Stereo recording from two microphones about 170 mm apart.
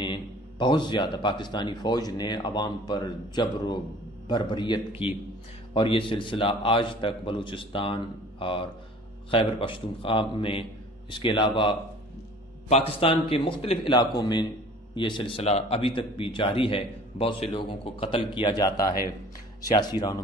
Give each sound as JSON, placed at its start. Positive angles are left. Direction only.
{"t": 0.0, "sound": "speech", "side_deg": 30}